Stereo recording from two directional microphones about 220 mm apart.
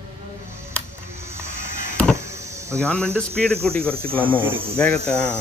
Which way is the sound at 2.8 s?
5° left (ahead or behind).